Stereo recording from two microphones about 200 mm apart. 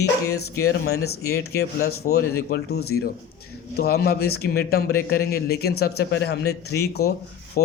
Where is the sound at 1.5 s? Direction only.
50° left (ahead or behind).